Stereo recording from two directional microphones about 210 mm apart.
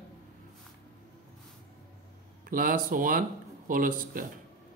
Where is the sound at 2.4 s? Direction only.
40° right (ahead or behind).